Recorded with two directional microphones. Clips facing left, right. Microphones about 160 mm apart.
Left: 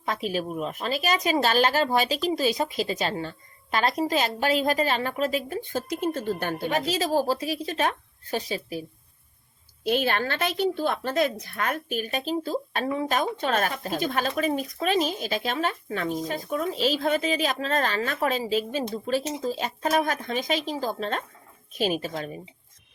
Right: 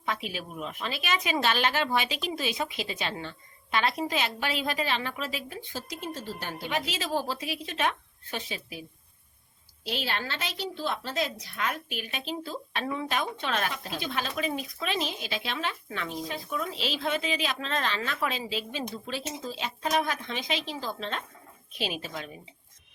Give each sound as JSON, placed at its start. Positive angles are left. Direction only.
{"t": 0.0, "sound": "a woman's voice", "side_deg": 40}
{"t": 9.8, "sound": "a woman's voice", "side_deg": 50}